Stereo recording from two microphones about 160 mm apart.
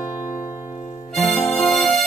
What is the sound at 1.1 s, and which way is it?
Music, centre (ahead or behind).